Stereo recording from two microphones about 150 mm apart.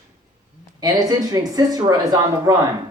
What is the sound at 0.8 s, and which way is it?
Speech, 25° right (ahead or behind).